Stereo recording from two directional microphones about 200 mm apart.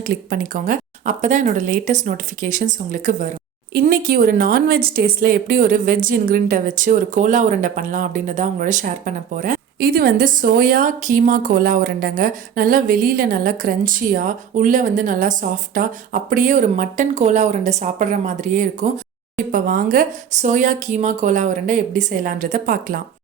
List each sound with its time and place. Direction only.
0.0 s a woman's voice: 45° right (ahead or behind)